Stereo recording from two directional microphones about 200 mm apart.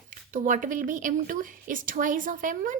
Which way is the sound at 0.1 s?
40° right (ahead or behind).